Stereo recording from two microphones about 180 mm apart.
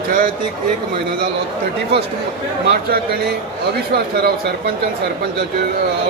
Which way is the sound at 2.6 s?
60° right (ahead or behind).